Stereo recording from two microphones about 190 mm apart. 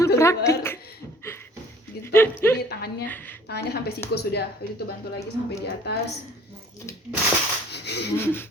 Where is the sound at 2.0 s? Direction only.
10° left (ahead or behind).